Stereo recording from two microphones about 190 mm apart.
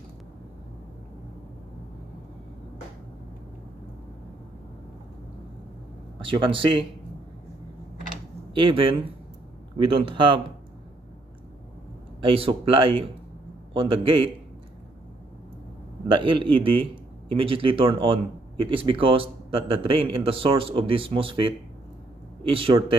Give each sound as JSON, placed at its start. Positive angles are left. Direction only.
{"t": 6.1, "sound": "speech", "side_deg": -25}
{"t": 8.5, "sound": "speech", "side_deg": -25}
{"t": 9.9, "sound": "speech", "side_deg": -25}
{"t": 12.2, "sound": "speech", "side_deg": -30}
{"t": 16.1, "sound": "speech", "side_deg": -25}